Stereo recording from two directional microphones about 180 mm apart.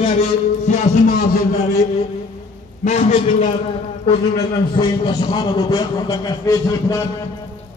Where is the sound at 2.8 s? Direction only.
40° left (ahead or behind); by 7.0 s 20° left (ahead or behind).